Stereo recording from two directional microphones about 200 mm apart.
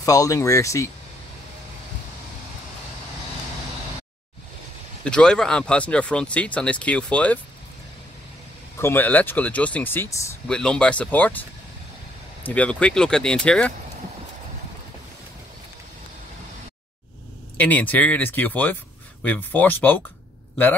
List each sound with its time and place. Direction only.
0.0 s speech: 15° left (ahead or behind)
5.0 s speech: 5° left (ahead or behind)
8.7 s speech: 10° left (ahead or behind)
12.4 s speech: 5° left (ahead or behind)
17.6 s speech: 10° left (ahead or behind)